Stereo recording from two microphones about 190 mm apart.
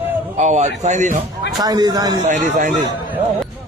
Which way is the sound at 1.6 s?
20° right (ahead or behind).